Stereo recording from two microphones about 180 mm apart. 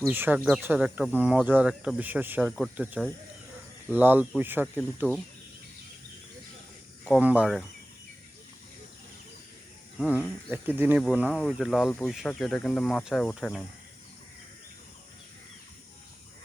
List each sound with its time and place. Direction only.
0.1 s speech: 10° right (ahead or behind)
7.0 s speech: 5° right (ahead or behind)
10.0 s speech: 5° right (ahead or behind)